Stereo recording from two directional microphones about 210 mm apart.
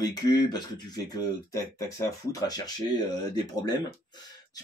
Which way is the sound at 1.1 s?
15° left (ahead or behind).